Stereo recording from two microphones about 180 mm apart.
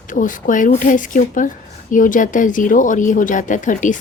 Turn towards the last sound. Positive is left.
turn(degrees=45)  # may be behind; listen again after turning